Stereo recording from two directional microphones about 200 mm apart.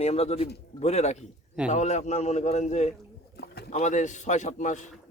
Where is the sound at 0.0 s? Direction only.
30° left (ahead or behind).